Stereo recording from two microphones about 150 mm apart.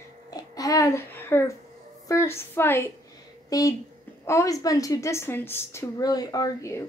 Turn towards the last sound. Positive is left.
turn(degrees=20)  # may be behind; listen again after turning